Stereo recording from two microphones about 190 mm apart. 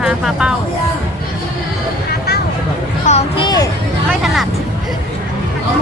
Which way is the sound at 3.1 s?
30° left (ahead or behind).